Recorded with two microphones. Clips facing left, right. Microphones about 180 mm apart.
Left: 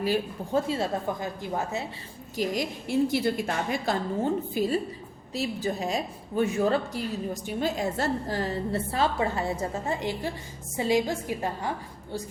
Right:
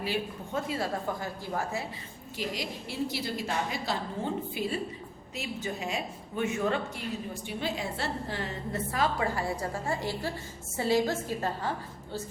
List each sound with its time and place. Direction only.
0.0 s speech: 40° left (ahead or behind)
0.7 s a woman's voice: 20° left (ahead or behind)
2.3 s a woman's voice: 45° left (ahead or behind); by 11.7 s 15° left (ahead or behind)